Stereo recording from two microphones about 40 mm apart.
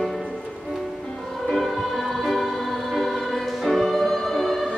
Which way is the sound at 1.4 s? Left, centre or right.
Centre.